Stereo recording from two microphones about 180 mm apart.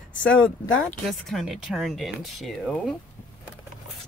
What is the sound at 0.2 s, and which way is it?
Speech, 5° left (ahead or behind).